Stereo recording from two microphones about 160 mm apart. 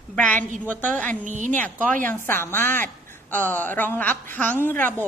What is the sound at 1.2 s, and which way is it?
Speech, 50° right (ahead or behind).